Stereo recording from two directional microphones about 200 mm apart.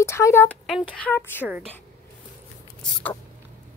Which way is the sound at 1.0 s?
10° left (ahead or behind).